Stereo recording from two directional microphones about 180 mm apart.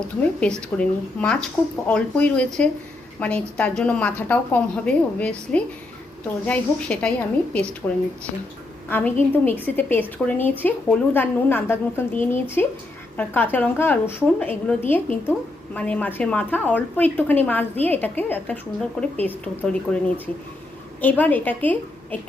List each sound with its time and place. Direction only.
0.2 s a woman's voice: 5° left (ahead or behind)
8.9 s a woman's voice: 10° left (ahead or behind)
21.0 s a woman's voice: 10° left (ahead or behind)